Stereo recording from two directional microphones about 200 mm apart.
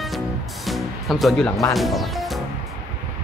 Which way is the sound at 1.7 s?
Centre (ahead or behind).